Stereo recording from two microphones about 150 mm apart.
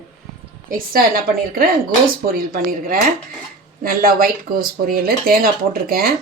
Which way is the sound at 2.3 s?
75° right (ahead or behind).